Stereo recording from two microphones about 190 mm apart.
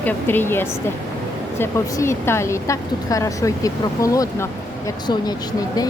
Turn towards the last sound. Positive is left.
turn(degrees=15)  # may be behind; listen again after turning